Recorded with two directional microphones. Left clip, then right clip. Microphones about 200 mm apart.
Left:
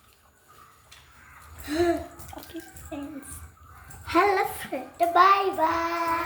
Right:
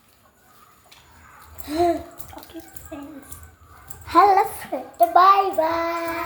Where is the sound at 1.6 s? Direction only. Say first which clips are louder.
Right 4 dB; 5° left (ahead or behind).